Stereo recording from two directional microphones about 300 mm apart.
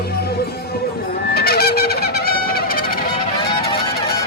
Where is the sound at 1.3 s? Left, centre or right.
Left.